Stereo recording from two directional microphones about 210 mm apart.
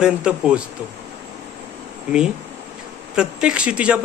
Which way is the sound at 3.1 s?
5° right (ahead or behind).